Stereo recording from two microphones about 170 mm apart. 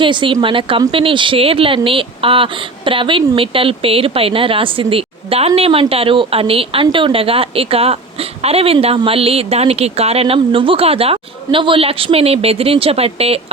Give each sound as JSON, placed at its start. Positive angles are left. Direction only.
{"t": 0.0, "sound": "speech", "side_deg": -30}